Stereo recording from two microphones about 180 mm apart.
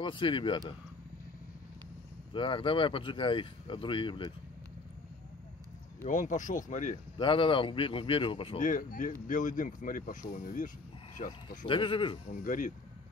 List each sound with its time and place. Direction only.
0.0 s speech: 30° left (ahead or behind)
2.3 s speech: 30° left (ahead or behind)
6.0 s speech: 45° left (ahead or behind)
7.2 s speech: 30° left (ahead or behind)
8.5 s speech: 45° left (ahead or behind)
11.6 s speech: 25° left (ahead or behind)
12.4 s speech: 45° left (ahead or behind)